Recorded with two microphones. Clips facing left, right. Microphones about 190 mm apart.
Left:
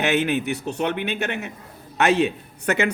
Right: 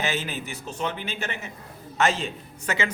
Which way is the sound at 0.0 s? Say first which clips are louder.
Left 8 dB; 65° left (ahead or behind).